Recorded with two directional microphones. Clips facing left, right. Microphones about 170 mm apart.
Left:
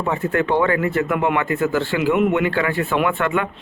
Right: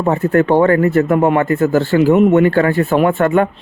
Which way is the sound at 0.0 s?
40° right (ahead or behind).